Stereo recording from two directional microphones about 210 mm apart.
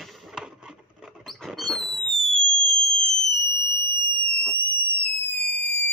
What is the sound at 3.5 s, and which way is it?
Fire alarm, 10° left (ahead or behind).